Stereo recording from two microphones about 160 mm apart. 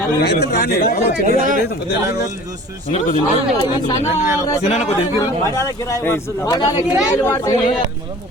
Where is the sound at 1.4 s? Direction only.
55° right (ahead or behind).